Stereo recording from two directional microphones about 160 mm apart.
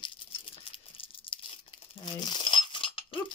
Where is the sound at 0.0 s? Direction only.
30° left (ahead or behind).